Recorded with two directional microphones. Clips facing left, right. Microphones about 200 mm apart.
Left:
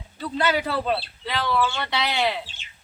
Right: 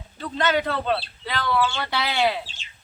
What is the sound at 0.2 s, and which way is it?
A man's voice, 10° left (ahead or behind).